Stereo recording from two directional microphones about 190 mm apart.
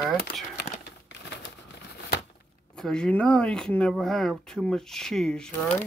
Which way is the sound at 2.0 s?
65° left (ahead or behind).